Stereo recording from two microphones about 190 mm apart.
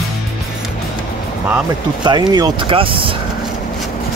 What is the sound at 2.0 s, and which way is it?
Speech, 20° right (ahead or behind).